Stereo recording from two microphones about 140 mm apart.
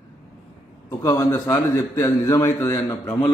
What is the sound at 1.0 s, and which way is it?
A man's voice, 25° left (ahead or behind).